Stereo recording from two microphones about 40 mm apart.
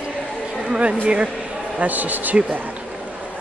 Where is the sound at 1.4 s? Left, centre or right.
Right.